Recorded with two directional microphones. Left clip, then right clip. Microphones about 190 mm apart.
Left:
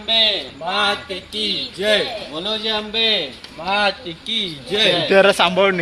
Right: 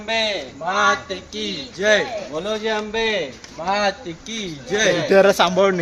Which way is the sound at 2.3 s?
40° right (ahead or behind).